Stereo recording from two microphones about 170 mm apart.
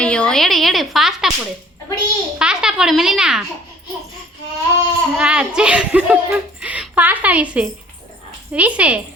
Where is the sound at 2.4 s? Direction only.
5° right (ahead or behind).